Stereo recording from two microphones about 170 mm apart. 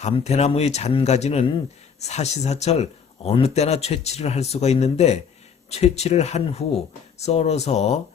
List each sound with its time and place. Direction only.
0.0 s speech: 40° left (ahead or behind)